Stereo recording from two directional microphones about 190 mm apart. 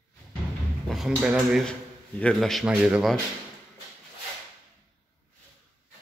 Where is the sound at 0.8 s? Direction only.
Centre (ahead or behind).